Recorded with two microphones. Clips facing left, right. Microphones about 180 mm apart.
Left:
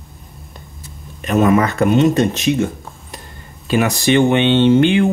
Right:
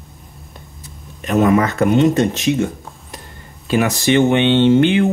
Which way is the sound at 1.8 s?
20° left (ahead or behind).